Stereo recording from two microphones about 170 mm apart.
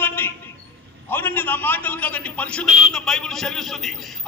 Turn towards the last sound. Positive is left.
turn(degrees=0)  # may be behind; listen again after turning